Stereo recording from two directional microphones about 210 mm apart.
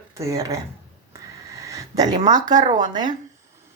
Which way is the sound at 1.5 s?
15° right (ahead or behind).